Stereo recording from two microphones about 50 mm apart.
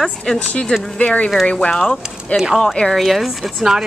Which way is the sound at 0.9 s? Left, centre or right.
Left.